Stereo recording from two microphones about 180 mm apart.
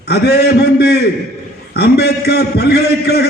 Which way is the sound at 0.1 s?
65° left (ahead or behind).